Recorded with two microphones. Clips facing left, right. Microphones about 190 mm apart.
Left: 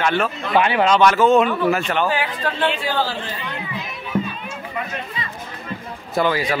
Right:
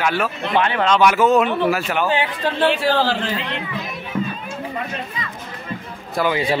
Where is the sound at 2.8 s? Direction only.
90° right.